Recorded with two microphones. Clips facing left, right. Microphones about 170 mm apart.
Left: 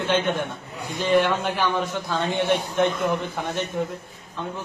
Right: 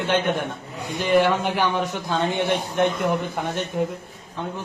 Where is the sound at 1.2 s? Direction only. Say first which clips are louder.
Right 2 dB; 15° right (ahead or behind).